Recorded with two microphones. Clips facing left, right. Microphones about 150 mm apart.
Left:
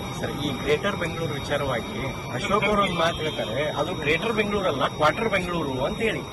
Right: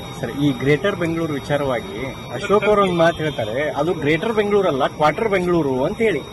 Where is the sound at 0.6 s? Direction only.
65° right (ahead or behind).